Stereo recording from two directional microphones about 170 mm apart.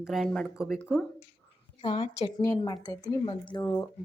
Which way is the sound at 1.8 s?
35° left (ahead or behind).